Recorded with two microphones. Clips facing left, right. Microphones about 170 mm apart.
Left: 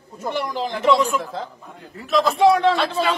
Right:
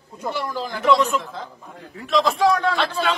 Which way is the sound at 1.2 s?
30° left (ahead or behind).